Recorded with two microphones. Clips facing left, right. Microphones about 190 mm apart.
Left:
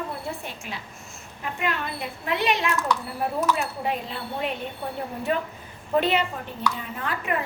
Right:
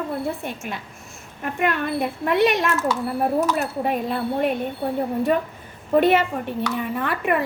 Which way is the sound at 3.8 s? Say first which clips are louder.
Right 6 dB; 50° right (ahead or behind).